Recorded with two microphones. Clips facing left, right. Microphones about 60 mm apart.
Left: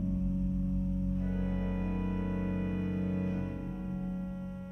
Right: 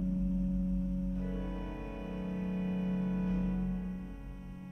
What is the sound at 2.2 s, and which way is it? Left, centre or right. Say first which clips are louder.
Music: left 2 dB; centre.